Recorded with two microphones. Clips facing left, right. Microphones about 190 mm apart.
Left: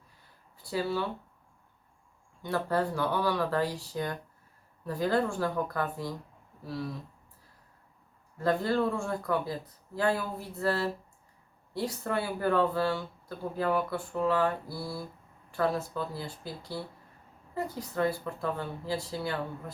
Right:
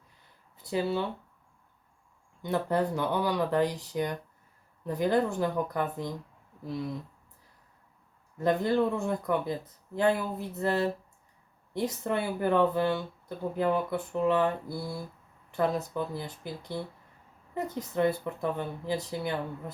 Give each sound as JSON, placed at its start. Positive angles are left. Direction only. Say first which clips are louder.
{"t": 0.5, "sound": "speech", "louder": "right 2 dB", "side_deg": -20}
{"t": 2.4, "sound": "speech", "louder": "right 1 dB", "side_deg": -20}
{"t": 8.4, "sound": "speech", "louder": "right 2 dB", "side_deg": -20}